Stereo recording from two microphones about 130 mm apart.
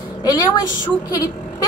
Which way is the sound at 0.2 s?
35° left (ahead or behind).